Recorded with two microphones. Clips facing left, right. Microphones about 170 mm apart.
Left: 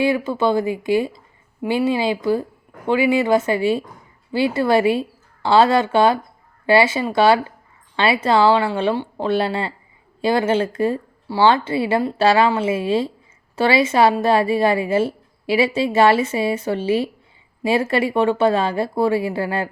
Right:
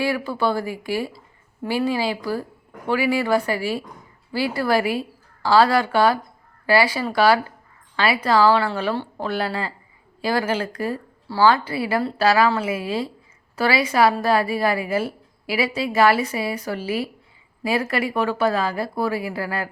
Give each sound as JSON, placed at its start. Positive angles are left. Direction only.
{"t": 0.0, "sound": "a woman's voice", "side_deg": 20}